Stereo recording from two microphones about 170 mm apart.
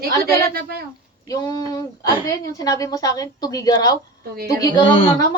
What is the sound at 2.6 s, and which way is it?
A woman's voice, 20° left (ahead or behind).